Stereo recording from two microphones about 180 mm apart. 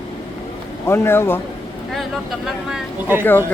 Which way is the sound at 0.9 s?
15° left (ahead or behind).